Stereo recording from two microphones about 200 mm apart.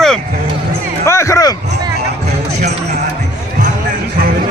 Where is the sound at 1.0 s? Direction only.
15° left (ahead or behind).